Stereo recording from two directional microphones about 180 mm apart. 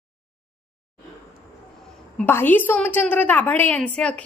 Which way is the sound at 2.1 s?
10° left (ahead or behind).